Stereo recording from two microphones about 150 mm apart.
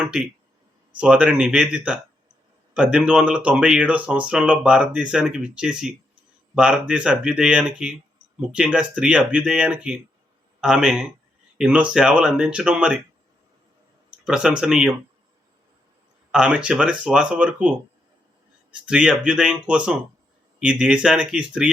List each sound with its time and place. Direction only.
0.0 s speech: 5° right (ahead or behind)
14.3 s speech: 5° right (ahead or behind)
16.3 s speech: 5° right (ahead or behind)